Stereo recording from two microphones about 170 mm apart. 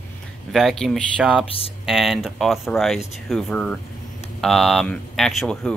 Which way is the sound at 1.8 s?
Centre (ahead or behind).